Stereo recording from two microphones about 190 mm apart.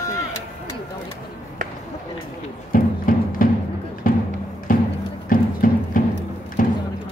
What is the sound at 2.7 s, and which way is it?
Music, 45° left (ahead or behind).